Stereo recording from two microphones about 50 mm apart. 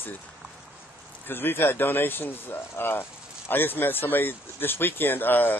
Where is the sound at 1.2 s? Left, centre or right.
Left.